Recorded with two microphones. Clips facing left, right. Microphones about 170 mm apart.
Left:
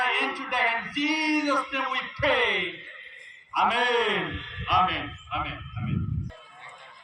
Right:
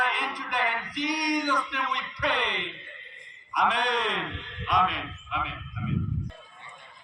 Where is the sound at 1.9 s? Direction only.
5° left (ahead or behind).